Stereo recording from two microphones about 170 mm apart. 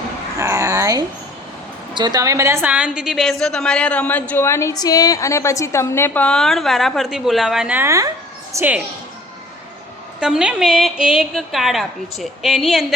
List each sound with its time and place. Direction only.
0.3 s a sound: 20° right (ahead or behind)
1.9 s a woman's voice: 25° right (ahead or behind)
10.2 s a woman's voice: 5° right (ahead or behind)